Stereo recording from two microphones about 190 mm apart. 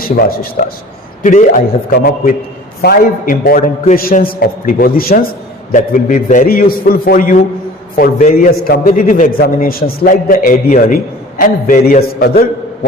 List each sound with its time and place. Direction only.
0.0 s a man's voice: 50° left (ahead or behind)